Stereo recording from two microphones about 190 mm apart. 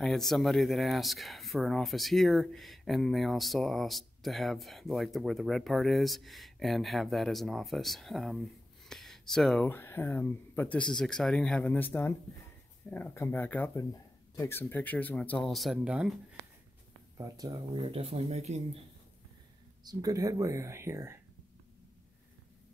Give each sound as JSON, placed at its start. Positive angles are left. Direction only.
{"t": 0.0, "sound": "speech", "side_deg": 0}
{"t": 17.2, "sound": "speech", "side_deg": -20}
{"t": 19.8, "sound": "speech", "side_deg": -20}